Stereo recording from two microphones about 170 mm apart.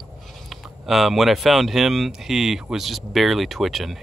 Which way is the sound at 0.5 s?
Centre (ahead or behind).